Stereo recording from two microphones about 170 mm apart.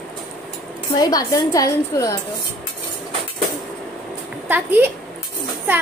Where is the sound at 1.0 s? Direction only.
20° left (ahead or behind).